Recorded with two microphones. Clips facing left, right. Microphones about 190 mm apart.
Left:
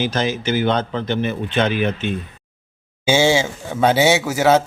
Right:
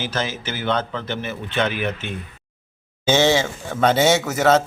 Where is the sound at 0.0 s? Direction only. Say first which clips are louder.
Left 5 dB; 15° left (ahead or behind).